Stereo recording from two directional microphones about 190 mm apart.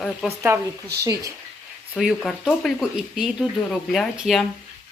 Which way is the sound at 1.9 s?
Centre (ahead or behind).